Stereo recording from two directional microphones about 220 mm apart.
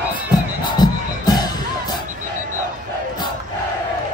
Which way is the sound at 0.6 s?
20° left (ahead or behind).